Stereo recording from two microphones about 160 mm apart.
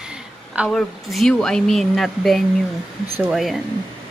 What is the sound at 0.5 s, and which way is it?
Speech, 5° right (ahead or behind).